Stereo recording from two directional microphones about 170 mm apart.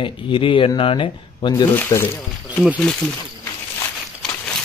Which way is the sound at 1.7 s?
15° left (ahead or behind).